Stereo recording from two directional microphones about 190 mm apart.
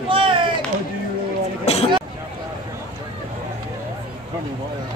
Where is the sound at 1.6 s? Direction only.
35° left (ahead or behind).